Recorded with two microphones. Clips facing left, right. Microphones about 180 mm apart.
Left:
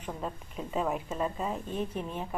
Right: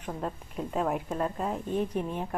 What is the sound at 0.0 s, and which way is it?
Speech, centre (ahead or behind).